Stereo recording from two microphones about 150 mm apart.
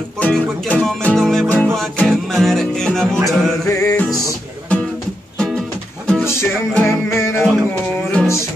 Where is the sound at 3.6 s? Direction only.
20° left (ahead or behind).